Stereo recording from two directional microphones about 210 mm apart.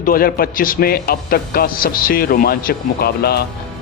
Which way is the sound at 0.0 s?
45° left (ahead or behind).